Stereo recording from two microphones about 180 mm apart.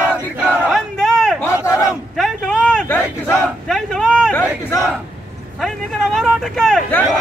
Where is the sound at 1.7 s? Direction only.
Centre (ahead or behind).